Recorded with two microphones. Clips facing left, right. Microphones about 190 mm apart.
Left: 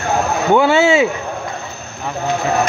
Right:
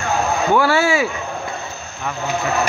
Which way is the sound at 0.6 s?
20° left (ahead or behind).